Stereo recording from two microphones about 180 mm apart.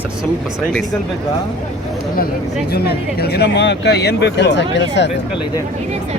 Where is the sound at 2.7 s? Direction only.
60° left (ahead or behind).